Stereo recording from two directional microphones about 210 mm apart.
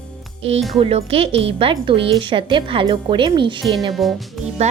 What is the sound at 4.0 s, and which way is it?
Speech, centre (ahead or behind).